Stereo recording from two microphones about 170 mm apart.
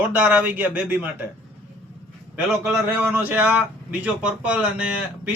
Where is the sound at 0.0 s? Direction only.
10° right (ahead or behind).